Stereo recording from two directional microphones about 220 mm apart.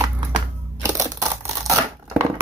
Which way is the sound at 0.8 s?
15° right (ahead or behind).